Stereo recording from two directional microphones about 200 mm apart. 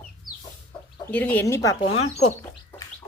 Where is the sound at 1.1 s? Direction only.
10° left (ahead or behind).